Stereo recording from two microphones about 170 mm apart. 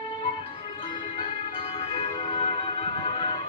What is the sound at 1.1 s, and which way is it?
Music, 30° left (ahead or behind).